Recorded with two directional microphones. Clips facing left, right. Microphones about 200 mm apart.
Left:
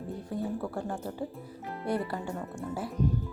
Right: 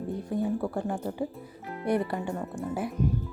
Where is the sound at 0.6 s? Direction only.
15° right (ahead or behind).